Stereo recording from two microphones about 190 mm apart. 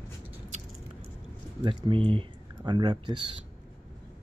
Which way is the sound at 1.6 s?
25° right (ahead or behind).